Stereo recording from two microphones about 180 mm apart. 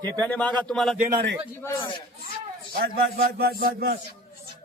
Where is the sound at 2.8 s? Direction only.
60° right (ahead or behind).